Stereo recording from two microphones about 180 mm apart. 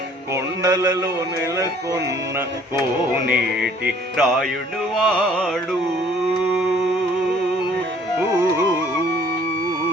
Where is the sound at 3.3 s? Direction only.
55° right (ahead or behind).